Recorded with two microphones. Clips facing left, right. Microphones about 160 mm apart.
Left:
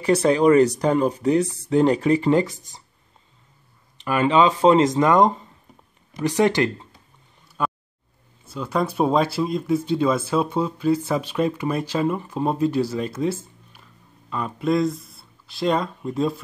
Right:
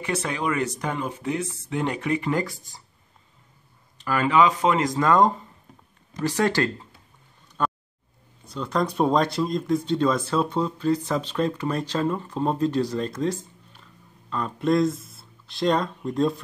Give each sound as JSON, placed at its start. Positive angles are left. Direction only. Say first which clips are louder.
{"t": 0.0, "sound": "speech", "louder": "left 10 dB", "side_deg": 35}
{"t": 4.0, "sound": "speech", "louder": "left 2 dB", "side_deg": 20}
{"t": 7.6, "sound": "a sound", "louder": "even", "side_deg": 5}
{"t": 8.5, "sound": "speech", "louder": "left 1 dB", "side_deg": 5}